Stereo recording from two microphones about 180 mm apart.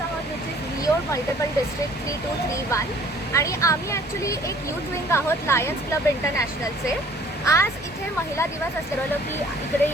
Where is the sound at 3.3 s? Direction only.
15° left (ahead or behind).